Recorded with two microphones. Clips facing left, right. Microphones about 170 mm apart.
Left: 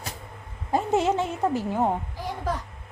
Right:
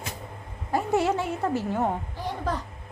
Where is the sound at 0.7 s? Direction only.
20° left (ahead or behind).